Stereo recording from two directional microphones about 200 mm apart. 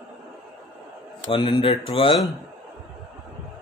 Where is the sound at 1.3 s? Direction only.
25° left (ahead or behind).